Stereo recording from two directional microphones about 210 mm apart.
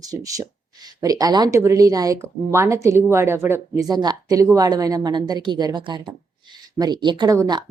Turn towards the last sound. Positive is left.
turn(degrees=-20)  # may be behind; listen again after turning